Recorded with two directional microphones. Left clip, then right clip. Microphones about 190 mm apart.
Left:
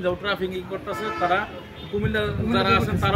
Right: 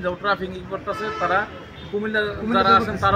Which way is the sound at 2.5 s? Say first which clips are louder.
Right 5 dB; 10° left (ahead or behind).